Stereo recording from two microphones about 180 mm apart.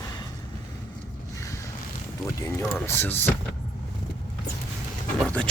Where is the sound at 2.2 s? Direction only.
15° left (ahead or behind).